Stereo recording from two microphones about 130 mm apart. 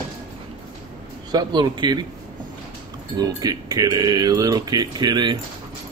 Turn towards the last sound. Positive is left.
turn(degrees=-35)  # may be behind; listen again after turning